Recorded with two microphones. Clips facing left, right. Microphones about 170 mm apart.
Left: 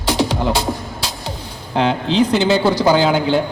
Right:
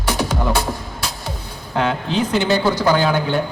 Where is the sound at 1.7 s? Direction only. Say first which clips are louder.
Left 4 dB; 25° left (ahead or behind).